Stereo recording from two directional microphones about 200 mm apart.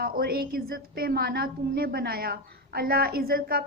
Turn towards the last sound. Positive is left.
turn(degrees=-50)  # may be behind; listen again after turning